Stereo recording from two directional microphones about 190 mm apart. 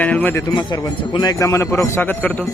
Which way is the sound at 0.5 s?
25° left (ahead or behind).